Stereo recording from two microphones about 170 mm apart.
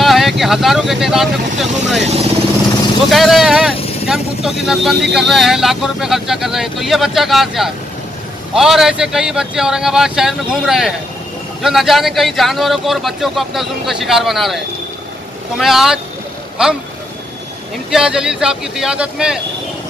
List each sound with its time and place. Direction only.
0.0 s speech: centre (ahead or behind)
2.0 s speech: 40° right (ahead or behind)
3.1 s speech: centre (ahead or behind)
17.9 s speech: 5° right (ahead or behind)